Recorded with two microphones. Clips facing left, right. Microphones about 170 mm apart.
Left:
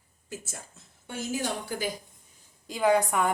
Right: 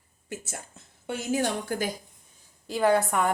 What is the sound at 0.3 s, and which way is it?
A woman's voice, 70° right (ahead or behind).